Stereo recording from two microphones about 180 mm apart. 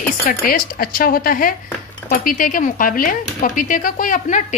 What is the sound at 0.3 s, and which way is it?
Speech, 55° left (ahead or behind).